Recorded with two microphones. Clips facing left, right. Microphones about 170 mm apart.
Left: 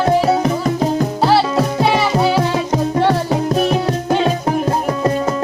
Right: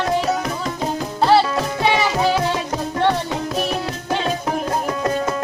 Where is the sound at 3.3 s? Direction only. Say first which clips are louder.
Left 7 dB; 40° left (ahead or behind).